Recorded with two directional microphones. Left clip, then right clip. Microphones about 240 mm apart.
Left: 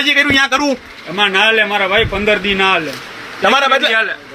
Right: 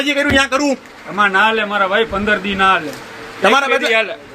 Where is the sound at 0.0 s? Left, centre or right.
Left.